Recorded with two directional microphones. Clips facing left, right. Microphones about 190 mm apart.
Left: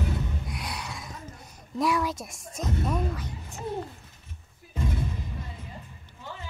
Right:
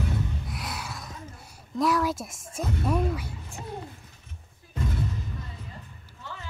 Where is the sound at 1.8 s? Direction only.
Centre (ahead or behind).